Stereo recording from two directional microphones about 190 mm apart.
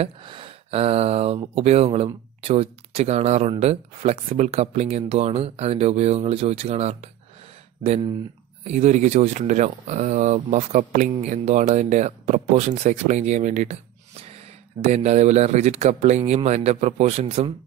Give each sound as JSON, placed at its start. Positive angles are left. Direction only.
{"t": 0.0, "sound": "speech", "side_deg": -25}
{"t": 8.6, "sound": "speech", "side_deg": -40}
{"t": 14.9, "sound": "speech", "side_deg": -35}